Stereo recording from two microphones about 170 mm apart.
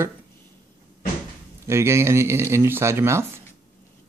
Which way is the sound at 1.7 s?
15° right (ahead or behind).